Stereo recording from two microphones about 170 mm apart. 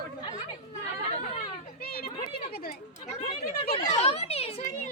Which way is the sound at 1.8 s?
60° left (ahead or behind).